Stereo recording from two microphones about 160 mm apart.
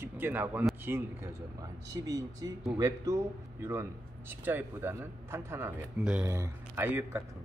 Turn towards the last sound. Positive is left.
turn(degrees=-15)  # may be behind; listen again after turning